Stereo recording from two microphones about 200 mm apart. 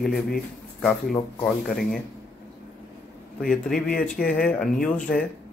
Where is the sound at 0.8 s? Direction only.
5° left (ahead or behind).